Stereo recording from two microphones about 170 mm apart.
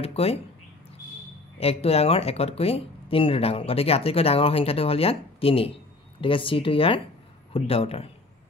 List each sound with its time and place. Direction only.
0.0 s speech: 35° left (ahead or behind)
1.6 s speech: 35° left (ahead or behind)